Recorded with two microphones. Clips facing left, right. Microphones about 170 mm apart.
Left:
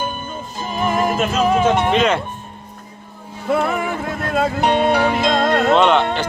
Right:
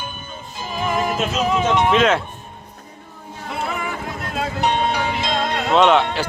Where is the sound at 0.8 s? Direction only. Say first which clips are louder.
Left 3 dB; 50° left (ahead or behind).